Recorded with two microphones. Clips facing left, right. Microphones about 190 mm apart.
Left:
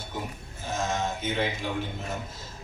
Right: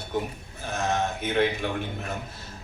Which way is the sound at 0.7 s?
60° right (ahead or behind).